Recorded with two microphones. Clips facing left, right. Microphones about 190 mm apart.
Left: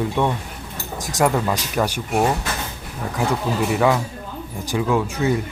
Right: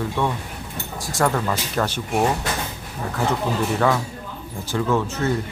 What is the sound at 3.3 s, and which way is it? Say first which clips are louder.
Speech: left 1 dB; 10° left (ahead or behind).